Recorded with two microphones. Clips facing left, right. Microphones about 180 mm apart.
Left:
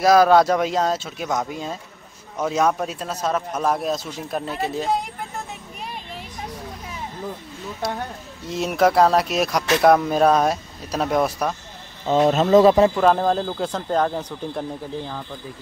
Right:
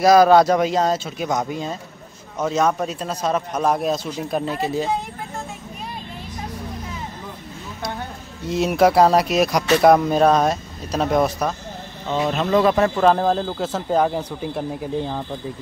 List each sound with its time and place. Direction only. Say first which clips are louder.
0.0 s speech: right 2 dB; centre (ahead or behind)
8.5 s speech: right 3 dB; centre (ahead or behind)
12.1 s speech: left 5 dB; 35° left (ahead or behind)
12.9 s speech: right 1 dB; centre (ahead or behind)